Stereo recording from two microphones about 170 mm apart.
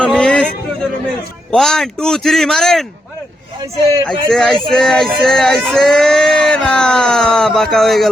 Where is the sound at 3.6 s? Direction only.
20° right (ahead or behind).